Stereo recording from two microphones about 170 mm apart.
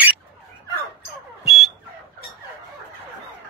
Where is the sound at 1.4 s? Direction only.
Centre (ahead or behind).